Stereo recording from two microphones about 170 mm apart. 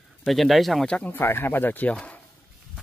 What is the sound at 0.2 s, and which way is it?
Speech, centre (ahead or behind).